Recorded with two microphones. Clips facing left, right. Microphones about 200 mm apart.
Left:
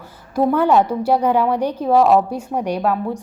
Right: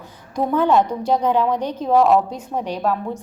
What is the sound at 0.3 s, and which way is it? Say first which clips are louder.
A woman's voice: left 2 dB; 10° left (ahead or behind).